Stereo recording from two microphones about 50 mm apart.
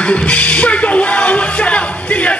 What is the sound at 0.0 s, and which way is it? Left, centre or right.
Music, left.